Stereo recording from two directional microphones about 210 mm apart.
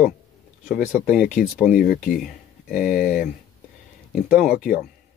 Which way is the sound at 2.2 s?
Centre (ahead or behind).